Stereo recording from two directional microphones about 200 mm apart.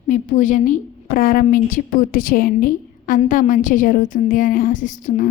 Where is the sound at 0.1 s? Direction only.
40° left (ahead or behind).